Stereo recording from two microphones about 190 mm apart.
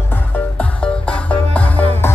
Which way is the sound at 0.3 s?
5° left (ahead or behind).